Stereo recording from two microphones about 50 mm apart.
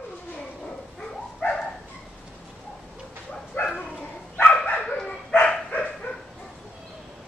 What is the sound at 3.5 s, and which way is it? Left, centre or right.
Dog, left.